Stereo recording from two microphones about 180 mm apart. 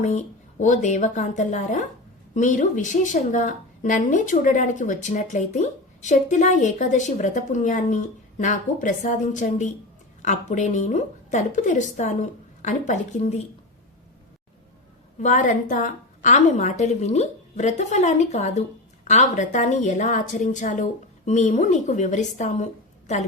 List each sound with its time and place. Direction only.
0.0 s a woman's voice: 40° left (ahead or behind)
15.2 s a woman's voice: 45° left (ahead or behind)